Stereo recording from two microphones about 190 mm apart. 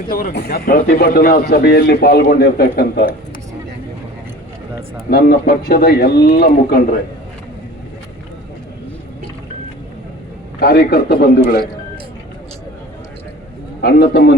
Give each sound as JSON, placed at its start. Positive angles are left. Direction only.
{"t": 0.1, "sound": "a man's voice", "side_deg": 50}
{"t": 5.1, "sound": "a man's voice", "side_deg": 55}
{"t": 10.6, "sound": "a man's voice", "side_deg": 55}
{"t": 13.8, "sound": "a man's voice", "side_deg": 55}